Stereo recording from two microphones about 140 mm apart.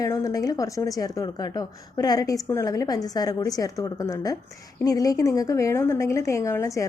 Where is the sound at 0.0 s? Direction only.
25° left (ahead or behind).